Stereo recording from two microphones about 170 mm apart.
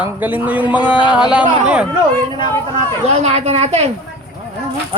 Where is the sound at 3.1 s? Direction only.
40° right (ahead or behind).